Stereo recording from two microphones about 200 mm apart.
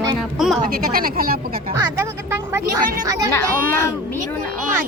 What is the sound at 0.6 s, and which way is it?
Speech, 45° right (ahead or behind).